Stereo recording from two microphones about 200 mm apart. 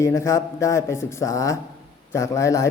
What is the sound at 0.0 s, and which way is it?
A man's voice, 15° left (ahead or behind).